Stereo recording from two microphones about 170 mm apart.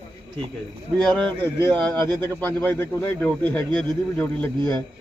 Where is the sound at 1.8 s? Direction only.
5° left (ahead or behind).